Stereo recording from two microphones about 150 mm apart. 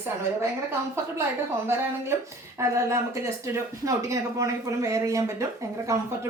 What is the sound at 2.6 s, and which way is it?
Speech, 20° right (ahead or behind).